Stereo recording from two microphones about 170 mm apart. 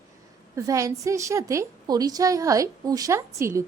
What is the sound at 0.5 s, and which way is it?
A woman's voice, 20° right (ahead or behind).